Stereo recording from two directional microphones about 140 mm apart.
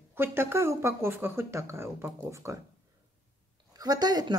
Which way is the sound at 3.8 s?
30° right (ahead or behind).